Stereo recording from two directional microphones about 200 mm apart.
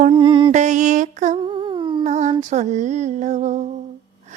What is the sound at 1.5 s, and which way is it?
Humming, 25° right (ahead or behind).